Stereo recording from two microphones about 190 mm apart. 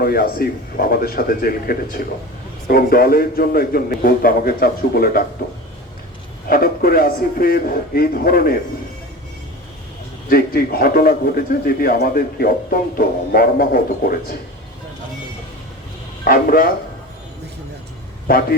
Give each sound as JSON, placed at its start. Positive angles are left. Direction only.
{"t": 0.0, "sound": "a man's voice", "side_deg": 50}
{"t": 6.5, "sound": "a man's voice", "side_deg": 50}
{"t": 10.2, "sound": "a man's voice", "side_deg": 50}
{"t": 16.2, "sound": "a man's voice", "side_deg": 50}
{"t": 18.3, "sound": "a man's voice", "side_deg": 50}